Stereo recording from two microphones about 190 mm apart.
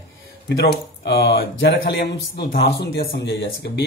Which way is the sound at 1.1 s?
60° left (ahead or behind).